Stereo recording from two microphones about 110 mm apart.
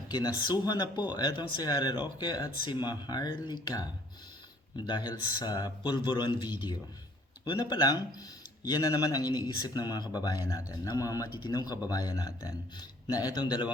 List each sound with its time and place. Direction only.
0.1 s speech: 40° left (ahead or behind)
4.9 s speech: 40° left (ahead or behind)